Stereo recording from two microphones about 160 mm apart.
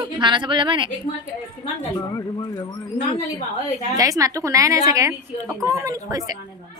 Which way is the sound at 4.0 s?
20° right (ahead or behind).